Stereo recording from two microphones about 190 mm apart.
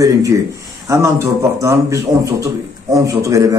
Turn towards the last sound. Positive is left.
turn(degrees=-15)  # may be behind; listen again after turning